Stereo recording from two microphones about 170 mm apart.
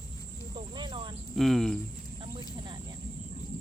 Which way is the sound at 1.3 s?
Centre (ahead or behind).